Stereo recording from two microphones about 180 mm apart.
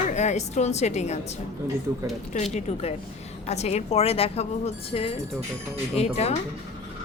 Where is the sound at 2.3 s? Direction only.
40° left (ahead or behind).